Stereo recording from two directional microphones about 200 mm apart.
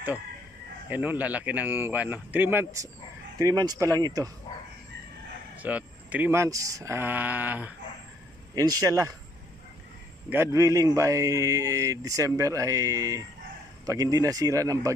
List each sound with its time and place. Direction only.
0.8 s speech: 10° right (ahead or behind)
5.6 s speech: 10° right (ahead or behind)
10.3 s speech: 15° right (ahead or behind)